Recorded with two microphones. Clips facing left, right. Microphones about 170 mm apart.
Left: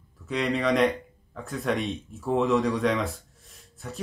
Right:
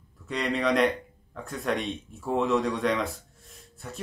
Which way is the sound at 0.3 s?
Centre (ahead or behind).